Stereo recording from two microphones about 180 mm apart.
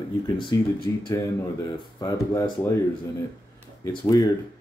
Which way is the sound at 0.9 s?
15° left (ahead or behind).